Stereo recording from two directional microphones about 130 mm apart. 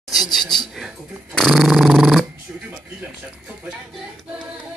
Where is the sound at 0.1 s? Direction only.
Centre (ahead or behind).